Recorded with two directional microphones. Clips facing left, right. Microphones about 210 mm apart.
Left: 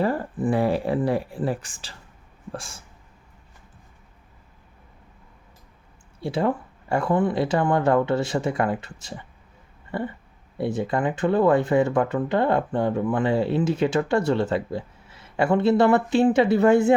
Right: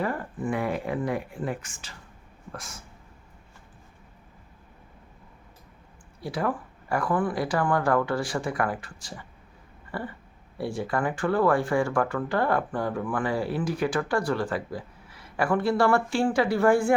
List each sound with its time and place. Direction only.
0.0 s speech: 30° left (ahead or behind)
6.1 s speech: 25° left (ahead or behind)